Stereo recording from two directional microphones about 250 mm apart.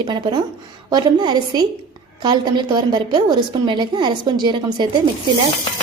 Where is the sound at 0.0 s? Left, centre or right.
Centre.